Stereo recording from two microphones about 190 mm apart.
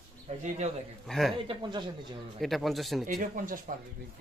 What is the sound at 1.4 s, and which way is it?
Speech, 25° right (ahead or behind).